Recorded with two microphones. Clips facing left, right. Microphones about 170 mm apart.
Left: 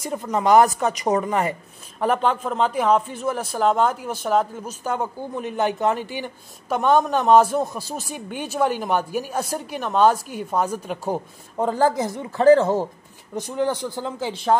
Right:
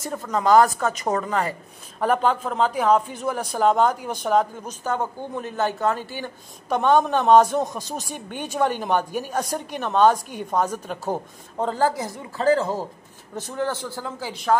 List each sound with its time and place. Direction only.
0.0 s speech: 15° left (ahead or behind)
2.0 s speech: 5° left (ahead or behind); by 14.6 s 25° left (ahead or behind)